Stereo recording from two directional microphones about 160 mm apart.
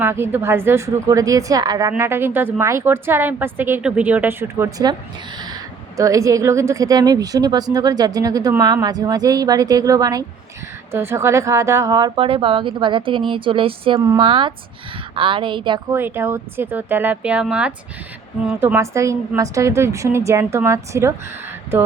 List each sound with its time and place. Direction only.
0.0 s a woman's voice: 15° right (ahead or behind); by 14.0 s 35° right (ahead or behind)
14.0 s a woman's voice: 20° right (ahead or behind)
15.9 s a woman's voice: 15° right (ahead or behind)